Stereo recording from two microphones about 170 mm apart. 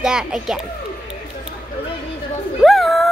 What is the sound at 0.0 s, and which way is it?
Speech, 5° right (ahead or behind).